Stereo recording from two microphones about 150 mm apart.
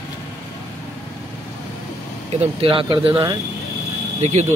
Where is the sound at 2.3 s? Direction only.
40° right (ahead or behind).